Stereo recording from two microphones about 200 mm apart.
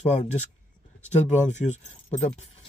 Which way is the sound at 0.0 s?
35° left (ahead or behind).